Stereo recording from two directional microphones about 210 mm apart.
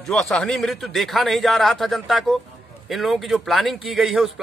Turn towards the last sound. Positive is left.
turn(degrees=0)  # may be behind; listen again after turning